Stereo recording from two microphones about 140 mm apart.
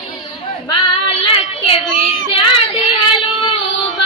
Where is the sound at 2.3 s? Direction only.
40° left (ahead or behind).